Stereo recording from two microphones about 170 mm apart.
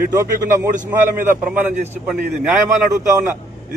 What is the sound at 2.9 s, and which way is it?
Speech, 20° right (ahead or behind).